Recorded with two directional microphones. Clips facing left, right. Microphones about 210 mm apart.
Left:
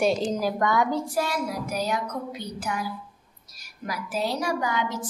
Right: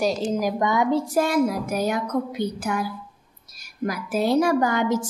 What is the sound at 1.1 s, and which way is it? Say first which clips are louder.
A woman's voice: right 7 dB; 50° right (ahead or behind).